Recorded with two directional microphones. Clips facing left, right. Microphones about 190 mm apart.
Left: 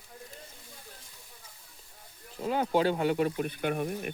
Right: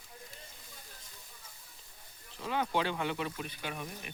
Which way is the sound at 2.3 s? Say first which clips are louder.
Left 6 dB; 40° left (ahead or behind).